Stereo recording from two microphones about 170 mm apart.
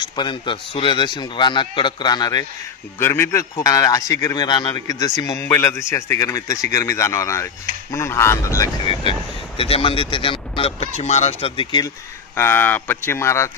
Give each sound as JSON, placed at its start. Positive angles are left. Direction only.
{"t": 0.0, "sound": "a man's voice", "side_deg": 25}
{"t": 3.0, "sound": "a man's voice", "side_deg": 15}
{"t": 9.6, "sound": "speech", "side_deg": 35}
{"t": 12.4, "sound": "speech", "side_deg": 10}